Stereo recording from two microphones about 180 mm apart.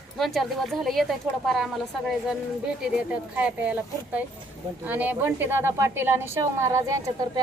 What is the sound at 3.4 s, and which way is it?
A woman's voice, 5° right (ahead or behind).